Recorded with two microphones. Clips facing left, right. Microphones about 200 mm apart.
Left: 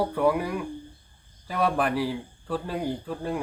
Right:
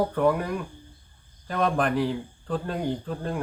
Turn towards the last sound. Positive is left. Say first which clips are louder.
# right 1 dB
turn(degrees=5)  # may be behind; listen again after turning